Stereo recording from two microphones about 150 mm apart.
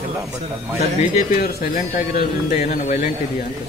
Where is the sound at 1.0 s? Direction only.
85° left.